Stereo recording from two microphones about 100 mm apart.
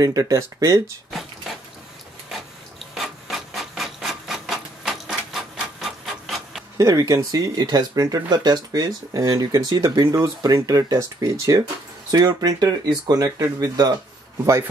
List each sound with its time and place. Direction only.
0.0 s speech: 35° right (ahead or behind)
2.9 s rub: centre (ahead or behind)
6.8 s speech: 35° right (ahead or behind)